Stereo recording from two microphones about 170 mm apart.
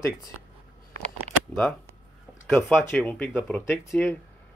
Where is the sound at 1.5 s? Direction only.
Centre (ahead or behind).